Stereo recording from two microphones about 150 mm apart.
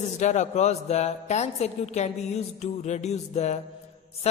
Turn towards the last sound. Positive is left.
turn(degrees=50)  # may be behind; listen again after turning